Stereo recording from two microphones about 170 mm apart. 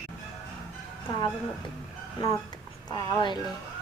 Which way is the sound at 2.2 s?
20° left (ahead or behind).